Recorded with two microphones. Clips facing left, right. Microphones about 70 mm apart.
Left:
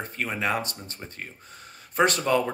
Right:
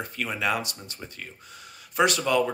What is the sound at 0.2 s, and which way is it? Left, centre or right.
Speech, left.